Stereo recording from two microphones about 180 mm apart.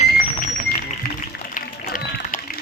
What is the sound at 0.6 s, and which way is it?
Music, 50° left (ahead or behind).